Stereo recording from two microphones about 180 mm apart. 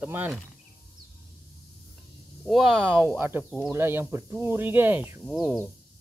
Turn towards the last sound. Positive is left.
turn(degrees=-5)  # may be behind; listen again after turning